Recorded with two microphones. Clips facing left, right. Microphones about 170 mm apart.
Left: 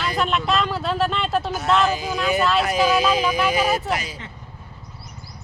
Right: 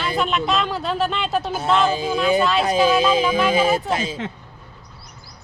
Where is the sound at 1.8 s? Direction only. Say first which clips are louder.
Right 3 dB; 25° right (ahead or behind).